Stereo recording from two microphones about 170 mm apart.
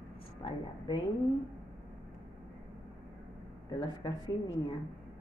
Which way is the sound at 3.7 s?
25° left (ahead or behind).